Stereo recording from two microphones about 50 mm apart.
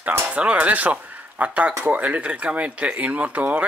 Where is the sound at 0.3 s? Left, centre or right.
Right.